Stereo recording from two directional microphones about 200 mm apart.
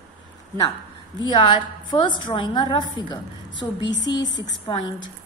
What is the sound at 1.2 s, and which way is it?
A woman's voice, 20° left (ahead or behind).